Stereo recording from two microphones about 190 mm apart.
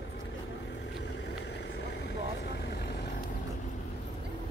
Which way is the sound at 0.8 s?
65° left (ahead or behind).